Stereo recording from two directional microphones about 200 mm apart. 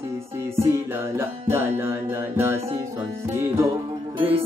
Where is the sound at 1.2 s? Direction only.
15° right (ahead or behind).